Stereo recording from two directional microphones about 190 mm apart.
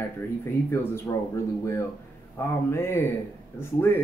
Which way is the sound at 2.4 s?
15° left (ahead or behind).